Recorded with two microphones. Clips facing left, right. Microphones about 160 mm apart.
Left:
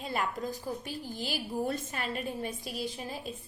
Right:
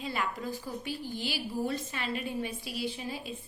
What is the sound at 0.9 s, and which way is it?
A woman's voice, 40° left (ahead or behind).